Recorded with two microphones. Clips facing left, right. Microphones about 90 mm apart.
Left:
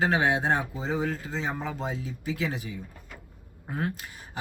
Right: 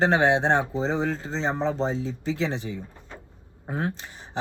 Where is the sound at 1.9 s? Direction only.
5° left (ahead or behind).